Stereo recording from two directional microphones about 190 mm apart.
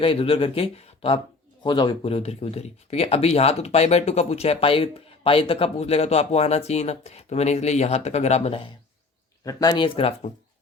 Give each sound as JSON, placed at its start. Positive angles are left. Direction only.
{"t": 0.0, "sound": "speech", "side_deg": 30}
{"t": 9.4, "sound": "speech", "side_deg": 20}